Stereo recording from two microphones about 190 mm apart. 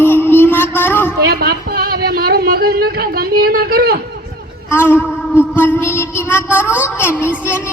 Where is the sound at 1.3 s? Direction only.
55° right (ahead or behind).